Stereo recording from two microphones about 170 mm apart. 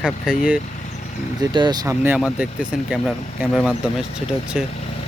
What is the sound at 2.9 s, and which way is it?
Speech, 5° right (ahead or behind).